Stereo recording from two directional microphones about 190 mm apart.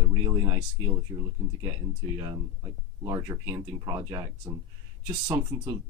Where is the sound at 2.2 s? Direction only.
20° right (ahead or behind).